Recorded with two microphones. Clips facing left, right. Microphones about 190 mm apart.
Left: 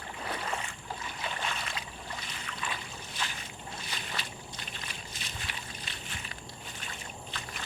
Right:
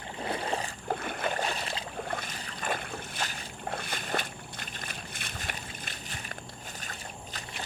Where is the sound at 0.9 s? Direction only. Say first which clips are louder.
Right 9 dB; 55° right (ahead or behind); by 1.8 s 35° right (ahead or behind).